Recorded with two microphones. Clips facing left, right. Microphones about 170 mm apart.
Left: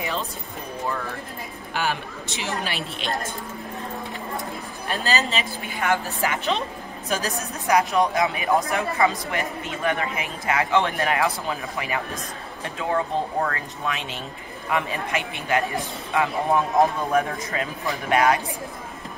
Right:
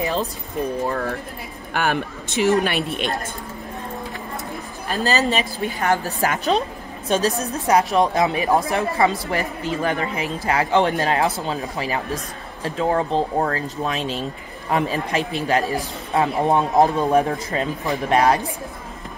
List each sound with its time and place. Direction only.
0.8 s a woman's voice: 50° right (ahead or behind)
4.9 s speech: 40° right (ahead or behind)